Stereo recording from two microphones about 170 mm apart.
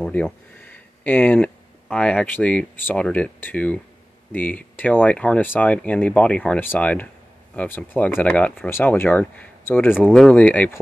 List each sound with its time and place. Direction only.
0.0 s speech: 10° left (ahead or behind)
9.9 s speech: centre (ahead or behind)